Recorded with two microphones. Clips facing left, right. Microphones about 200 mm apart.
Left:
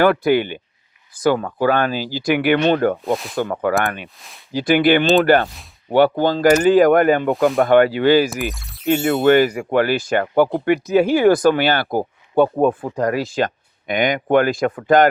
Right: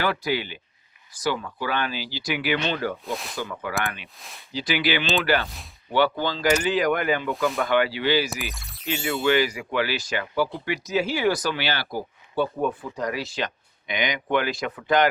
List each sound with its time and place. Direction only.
0.0 s speech: 55° left (ahead or behind)
3.0 s speech: centre (ahead or behind)
3.3 s speech: 55° left (ahead or behind)
8.3 s speech: centre (ahead or behind)
8.9 s speech: 55° left (ahead or behind)